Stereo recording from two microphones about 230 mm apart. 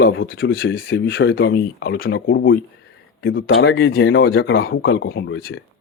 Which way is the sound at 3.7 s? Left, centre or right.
Left.